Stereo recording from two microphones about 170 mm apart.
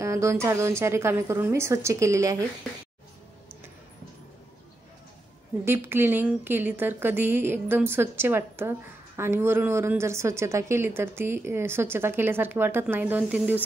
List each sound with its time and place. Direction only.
0.0 s a woman's voice: 15° right (ahead or behind)
5.7 s a woman's voice: 15° right (ahead or behind)